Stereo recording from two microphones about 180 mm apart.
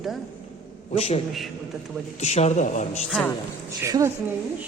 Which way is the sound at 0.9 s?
35° left (ahead or behind).